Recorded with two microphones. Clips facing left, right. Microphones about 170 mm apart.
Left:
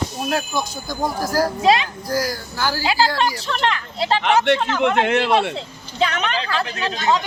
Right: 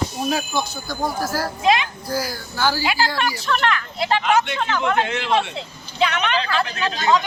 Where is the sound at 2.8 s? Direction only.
35° left (ahead or behind).